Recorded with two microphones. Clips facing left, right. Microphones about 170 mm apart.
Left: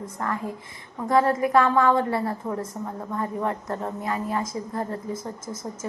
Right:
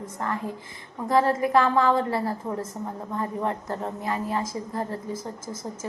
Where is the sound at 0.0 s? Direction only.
30° right (ahead or behind).